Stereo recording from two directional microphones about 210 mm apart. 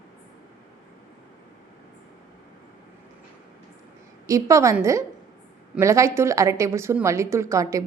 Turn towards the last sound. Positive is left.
turn(degrees=-15)  # may be behind; listen again after turning